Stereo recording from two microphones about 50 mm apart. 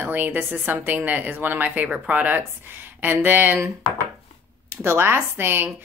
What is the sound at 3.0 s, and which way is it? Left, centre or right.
Speech, right.